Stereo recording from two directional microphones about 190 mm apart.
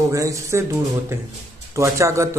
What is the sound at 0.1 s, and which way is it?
A man's voice, 15° right (ahead or behind).